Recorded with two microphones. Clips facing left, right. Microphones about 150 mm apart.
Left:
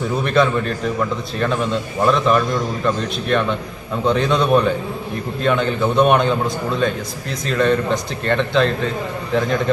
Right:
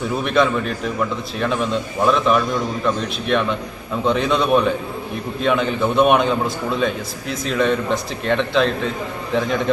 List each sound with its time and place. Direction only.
0.2 s a man's voice: centre (ahead or behind)